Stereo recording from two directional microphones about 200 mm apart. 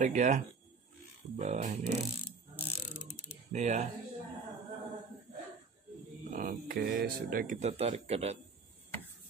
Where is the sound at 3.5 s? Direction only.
35° right (ahead or behind).